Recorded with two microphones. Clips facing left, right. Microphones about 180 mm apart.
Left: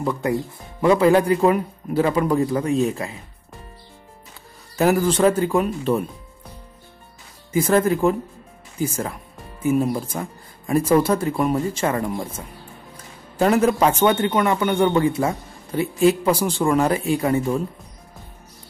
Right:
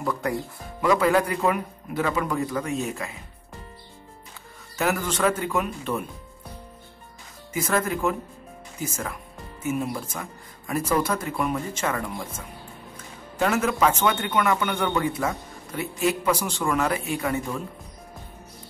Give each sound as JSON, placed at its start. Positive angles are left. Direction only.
{"t": 0.0, "sound": "speech", "side_deg": 20}
{"t": 4.7, "sound": "speech", "side_deg": 35}
{"t": 7.5, "sound": "a man's voice", "side_deg": 30}